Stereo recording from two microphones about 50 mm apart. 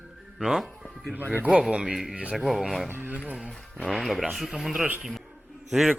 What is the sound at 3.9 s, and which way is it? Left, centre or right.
Speech, centre.